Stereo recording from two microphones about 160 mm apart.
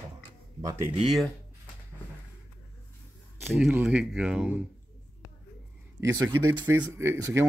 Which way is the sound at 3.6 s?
10° right (ahead or behind).